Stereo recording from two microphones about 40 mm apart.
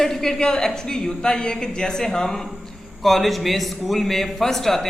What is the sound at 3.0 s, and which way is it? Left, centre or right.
Speech, centre.